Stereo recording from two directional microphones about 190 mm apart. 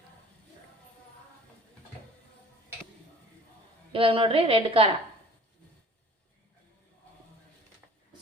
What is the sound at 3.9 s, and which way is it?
Speech, 30° right (ahead or behind).